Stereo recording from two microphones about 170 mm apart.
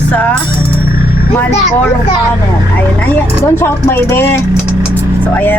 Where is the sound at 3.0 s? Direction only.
10° left (ahead or behind).